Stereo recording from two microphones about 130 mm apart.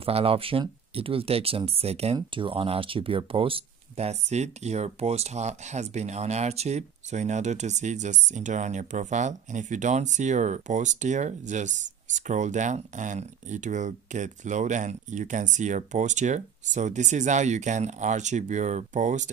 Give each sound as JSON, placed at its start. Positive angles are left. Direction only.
{"t": 0.0, "sound": "speech", "side_deg": -45}
{"t": 2.1, "sound": "speech", "side_deg": -40}